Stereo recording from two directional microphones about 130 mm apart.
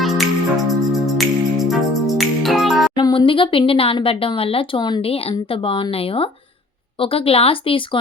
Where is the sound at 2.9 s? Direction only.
35° left (ahead or behind).